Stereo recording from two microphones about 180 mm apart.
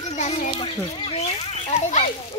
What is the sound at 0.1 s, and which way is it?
A child's voice, 40° left (ahead or behind).